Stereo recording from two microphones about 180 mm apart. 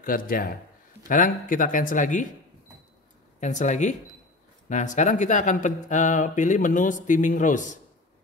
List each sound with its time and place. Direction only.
0.0 s speech: 50° left (ahead or behind)
3.3 s speech: 45° left (ahead or behind)